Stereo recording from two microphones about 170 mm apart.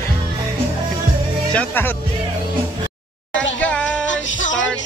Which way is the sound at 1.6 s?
10° left (ahead or behind).